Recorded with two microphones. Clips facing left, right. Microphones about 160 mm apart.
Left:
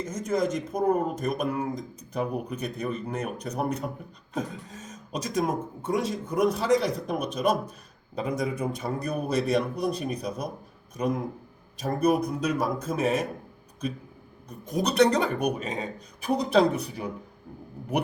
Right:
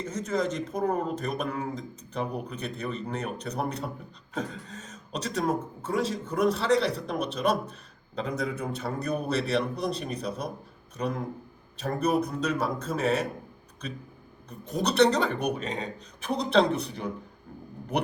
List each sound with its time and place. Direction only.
0.1 s a man's voice: 10° left (ahead or behind)
11.8 s a man's voice: 10° left (ahead or behind)
14.6 s a man's voice: 10° left (ahead or behind)